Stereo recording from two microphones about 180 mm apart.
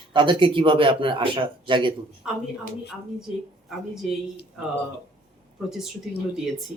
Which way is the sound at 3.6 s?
Centre (ahead or behind).